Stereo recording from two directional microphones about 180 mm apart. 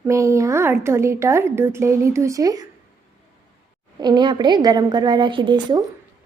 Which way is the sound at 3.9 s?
25° right (ahead or behind).